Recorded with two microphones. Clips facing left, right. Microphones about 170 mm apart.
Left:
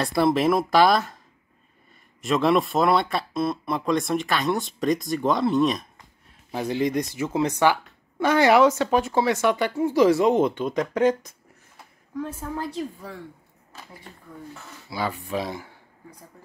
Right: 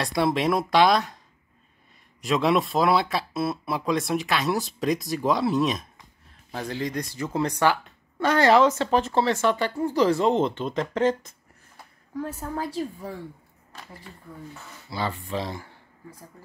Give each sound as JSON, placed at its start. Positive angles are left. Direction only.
{"t": 0.0, "sound": "speech", "side_deg": 0}
{"t": 2.2, "sound": "speech", "side_deg": 0}
{"t": 6.5, "sound": "speech", "side_deg": 15}
{"t": 11.7, "sound": "a sound", "side_deg": 0}
{"t": 14.9, "sound": "speech", "side_deg": 10}